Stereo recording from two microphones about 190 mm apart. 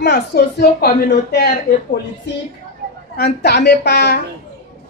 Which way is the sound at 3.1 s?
60° left (ahead or behind).